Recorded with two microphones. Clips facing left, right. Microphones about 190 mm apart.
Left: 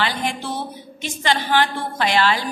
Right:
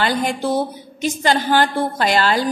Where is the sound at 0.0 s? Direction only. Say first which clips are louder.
Right 5 dB; 40° right (ahead or behind).